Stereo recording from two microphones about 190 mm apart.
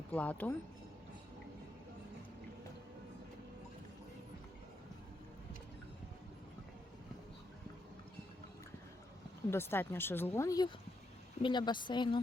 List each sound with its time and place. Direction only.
0.1 s speech: 5° left (ahead or behind)
9.5 s speech: 10° left (ahead or behind)